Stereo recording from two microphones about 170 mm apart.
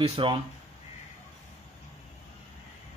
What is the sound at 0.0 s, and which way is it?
Speech, 35° right (ahead or behind).